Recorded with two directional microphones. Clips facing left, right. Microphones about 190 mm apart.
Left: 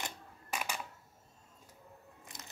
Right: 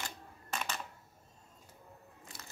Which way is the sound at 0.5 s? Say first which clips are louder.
Even; 10° left (ahead or behind).